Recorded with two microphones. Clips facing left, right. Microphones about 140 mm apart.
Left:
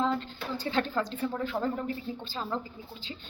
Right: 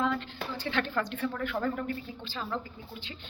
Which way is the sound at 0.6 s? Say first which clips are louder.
Left 2 dB; 35° left (ahead or behind).